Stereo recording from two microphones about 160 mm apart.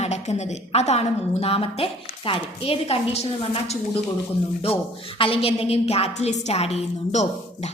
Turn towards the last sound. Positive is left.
turn(degrees=45)  # may be behind; listen again after turning